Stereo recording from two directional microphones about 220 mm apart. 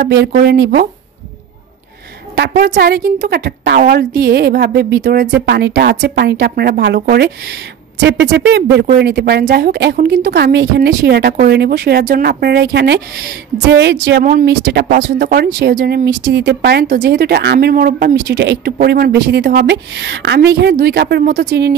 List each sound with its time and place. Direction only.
0.1 s a woman's voice: 45° right (ahead or behind)
2.5 s a woman's voice: 40° right (ahead or behind)
5.0 s speech: 35° right (ahead or behind)
5.3 s a woman's voice: 50° right (ahead or behind)
8.0 s a woman's voice: 55° right (ahead or behind); by 18.1 s 40° right (ahead or behind)
18.3 s a woman's voice: 50° right (ahead or behind)
21.5 s a woman's voice: 50° right (ahead or behind)